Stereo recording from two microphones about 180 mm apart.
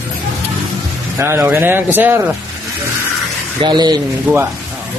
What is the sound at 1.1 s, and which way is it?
A man's voice, 15° right (ahead or behind).